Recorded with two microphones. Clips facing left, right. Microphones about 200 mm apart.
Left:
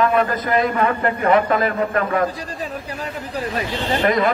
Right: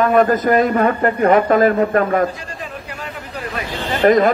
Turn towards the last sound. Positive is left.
turn(degrees=-45)  # may be behind; listen again after turning